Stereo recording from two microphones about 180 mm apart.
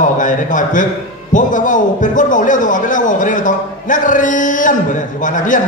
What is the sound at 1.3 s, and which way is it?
A man's voice, 45° left (ahead or behind).